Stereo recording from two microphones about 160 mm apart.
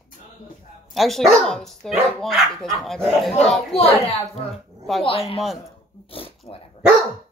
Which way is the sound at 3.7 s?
40° left (ahead or behind).